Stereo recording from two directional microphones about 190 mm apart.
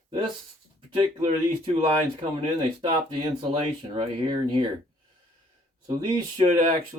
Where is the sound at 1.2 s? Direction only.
30° right (ahead or behind).